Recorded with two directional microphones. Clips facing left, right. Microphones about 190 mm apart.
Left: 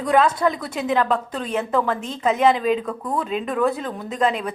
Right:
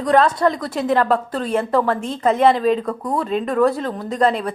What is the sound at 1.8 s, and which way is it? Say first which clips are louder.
Speech: right 3 dB; 40° right (ahead or behind).